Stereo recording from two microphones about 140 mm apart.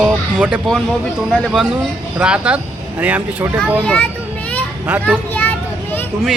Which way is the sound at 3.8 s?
5° left (ahead or behind).